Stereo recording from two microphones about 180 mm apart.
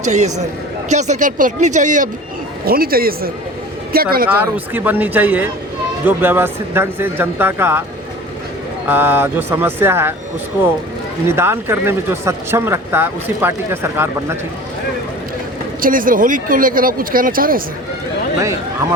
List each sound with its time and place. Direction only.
0.1 s a man's voice: 40° right (ahead or behind)
2.6 s speech: 55° right (ahead or behind)
4.3 s speech: 10° right (ahead or behind)
8.9 s speech: 10° right (ahead or behind)
11.3 s speech: 15° right (ahead or behind)
15.8 s speech: 50° right (ahead or behind)
18.3 s speech: 15° right (ahead or behind)